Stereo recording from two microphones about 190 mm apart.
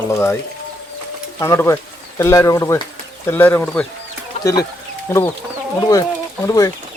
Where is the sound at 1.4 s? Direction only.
15° left (ahead or behind).